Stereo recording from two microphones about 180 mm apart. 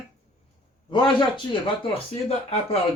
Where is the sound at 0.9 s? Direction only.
25° left (ahead or behind).